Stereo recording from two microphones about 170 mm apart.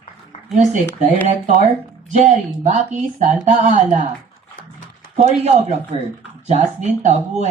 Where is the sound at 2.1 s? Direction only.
45° right (ahead or behind).